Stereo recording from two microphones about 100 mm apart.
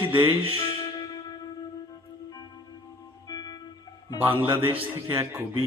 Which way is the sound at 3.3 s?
40° left (ahead or behind).